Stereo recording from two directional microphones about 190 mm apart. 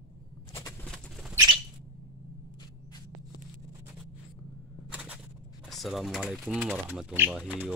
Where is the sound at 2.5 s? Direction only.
20° left (ahead or behind).